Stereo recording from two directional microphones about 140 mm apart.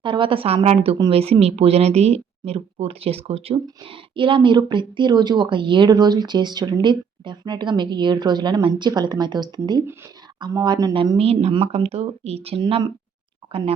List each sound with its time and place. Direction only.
0.0 s speech: 35° right (ahead or behind)
0.9 s speech: 30° right (ahead or behind)
1.2 s speech: 45° right (ahead or behind); by 11.2 s 30° right (ahead or behind)
11.2 s speech: 45° right (ahead or behind)